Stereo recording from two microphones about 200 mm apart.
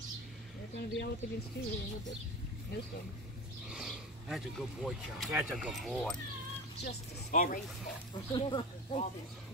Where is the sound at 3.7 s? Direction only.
Centre (ahead or behind).